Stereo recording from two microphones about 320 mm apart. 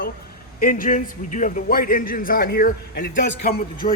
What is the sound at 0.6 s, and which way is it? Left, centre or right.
A man's voice, left.